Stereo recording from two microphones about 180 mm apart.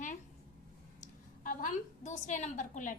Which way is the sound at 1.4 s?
45° left (ahead or behind).